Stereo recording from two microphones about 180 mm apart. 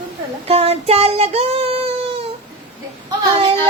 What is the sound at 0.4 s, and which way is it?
Child singing, 35° right (ahead or behind).